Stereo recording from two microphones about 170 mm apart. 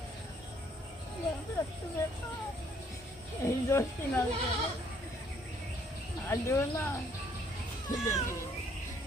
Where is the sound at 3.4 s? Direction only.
15° left (ahead or behind).